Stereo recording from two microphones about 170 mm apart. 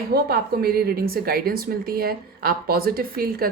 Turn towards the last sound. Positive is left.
turn(degrees=-60)  # may be behind; listen again after turning